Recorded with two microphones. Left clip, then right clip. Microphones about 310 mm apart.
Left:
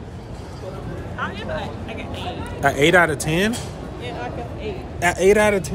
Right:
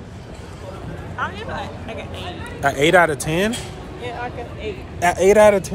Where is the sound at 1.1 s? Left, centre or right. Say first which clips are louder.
Right 1 dB; centre.